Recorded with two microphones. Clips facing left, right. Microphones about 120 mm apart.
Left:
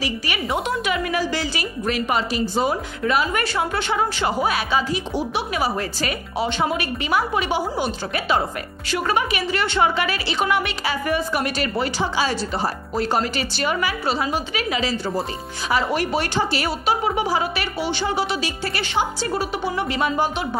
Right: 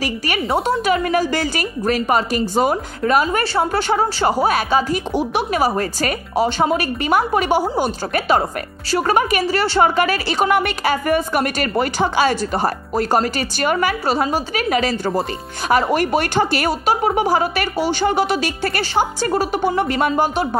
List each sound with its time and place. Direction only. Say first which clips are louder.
0.0 s a woman's voice: right 4 dB; 40° right (ahead or behind)